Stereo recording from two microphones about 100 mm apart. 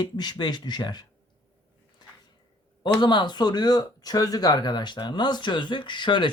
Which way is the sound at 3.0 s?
50° left (ahead or behind).